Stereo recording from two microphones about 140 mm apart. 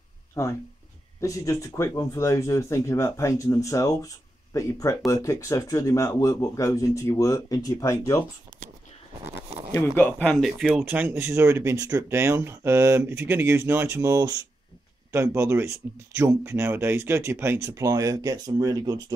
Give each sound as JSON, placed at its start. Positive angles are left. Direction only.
{"t": 0.3, "sound": "speech", "side_deg": 20}
{"t": 9.8, "sound": "speech", "side_deg": 15}
{"t": 10.7, "sound": "speech", "side_deg": -10}